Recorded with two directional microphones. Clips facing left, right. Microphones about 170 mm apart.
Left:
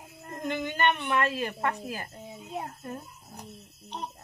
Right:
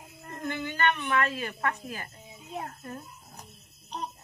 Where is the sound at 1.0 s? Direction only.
30° left (ahead or behind).